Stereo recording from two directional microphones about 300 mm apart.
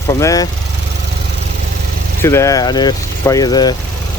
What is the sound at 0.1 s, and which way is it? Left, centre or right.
Speech, centre.